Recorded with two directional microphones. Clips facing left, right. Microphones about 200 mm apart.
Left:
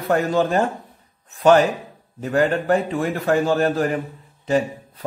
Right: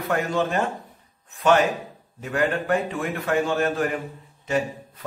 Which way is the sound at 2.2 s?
35° left (ahead or behind).